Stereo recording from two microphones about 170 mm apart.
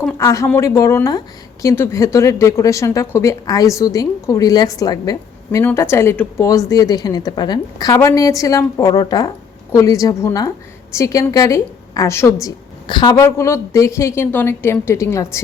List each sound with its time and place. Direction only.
0.2 s a woman's voice: 20° left (ahead or behind)